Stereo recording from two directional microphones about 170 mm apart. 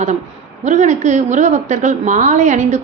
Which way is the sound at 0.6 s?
45° right (ahead or behind).